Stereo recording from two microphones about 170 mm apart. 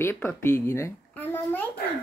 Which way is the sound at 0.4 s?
15° left (ahead or behind).